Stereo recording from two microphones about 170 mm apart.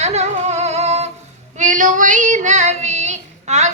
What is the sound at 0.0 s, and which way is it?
Singing, 40° right (ahead or behind).